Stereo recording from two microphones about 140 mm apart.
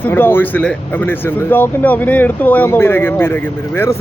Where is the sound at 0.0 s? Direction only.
15° left (ahead or behind).